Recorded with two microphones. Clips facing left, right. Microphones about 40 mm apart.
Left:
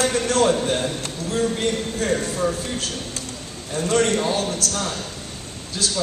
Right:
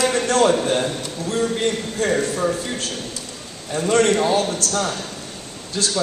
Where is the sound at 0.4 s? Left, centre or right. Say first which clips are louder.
Right 2 dB; right.